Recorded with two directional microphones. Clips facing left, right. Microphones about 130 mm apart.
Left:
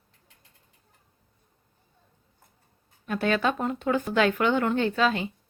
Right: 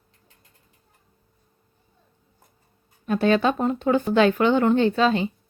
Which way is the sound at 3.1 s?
30° right (ahead or behind).